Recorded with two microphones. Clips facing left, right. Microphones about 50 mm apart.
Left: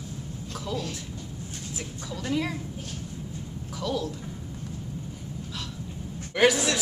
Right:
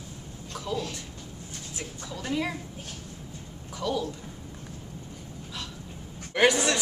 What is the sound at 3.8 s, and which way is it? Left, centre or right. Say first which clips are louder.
Speech: even; centre.